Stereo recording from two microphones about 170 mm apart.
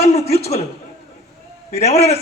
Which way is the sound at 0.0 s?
40° left (ahead or behind).